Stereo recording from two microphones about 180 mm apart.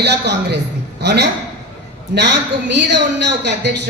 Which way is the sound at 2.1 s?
80° right.